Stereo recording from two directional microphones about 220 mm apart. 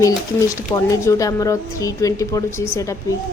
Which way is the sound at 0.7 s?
15° left (ahead or behind).